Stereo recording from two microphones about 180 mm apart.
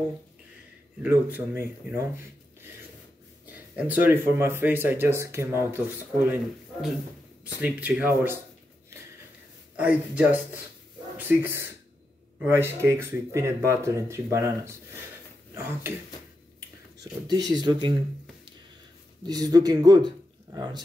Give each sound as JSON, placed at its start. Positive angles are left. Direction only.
{"t": 1.0, "sound": "speech", "side_deg": -10}
{"t": 3.4, "sound": "speech", "side_deg": -10}
{"t": 7.6, "sound": "speech", "side_deg": -10}
{"t": 9.8, "sound": "speech", "side_deg": -10}
{"t": 16.5, "sound": "speech", "side_deg": -20}
{"t": 19.2, "sound": "speech", "side_deg": -20}